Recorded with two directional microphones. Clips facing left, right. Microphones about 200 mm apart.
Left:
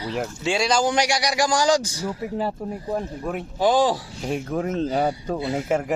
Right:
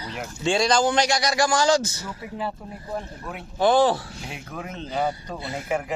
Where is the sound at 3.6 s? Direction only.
15° left (ahead or behind).